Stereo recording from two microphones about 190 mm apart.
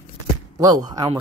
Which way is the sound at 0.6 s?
20° right (ahead or behind).